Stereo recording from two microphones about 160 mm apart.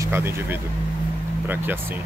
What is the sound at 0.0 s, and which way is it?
Speech, 15° right (ahead or behind).